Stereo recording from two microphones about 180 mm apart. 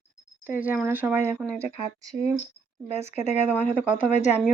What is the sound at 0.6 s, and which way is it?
Speech, 10° right (ahead or behind).